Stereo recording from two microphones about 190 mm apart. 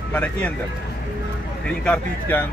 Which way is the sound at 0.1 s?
5° left (ahead or behind).